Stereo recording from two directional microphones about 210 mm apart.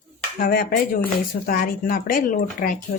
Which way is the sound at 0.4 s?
40° left (ahead or behind).